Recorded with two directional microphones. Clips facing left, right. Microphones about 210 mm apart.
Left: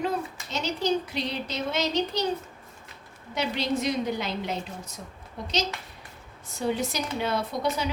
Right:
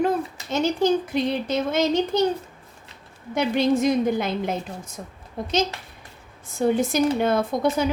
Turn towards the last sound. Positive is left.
turn(degrees=-50)  # may be behind; listen again after turning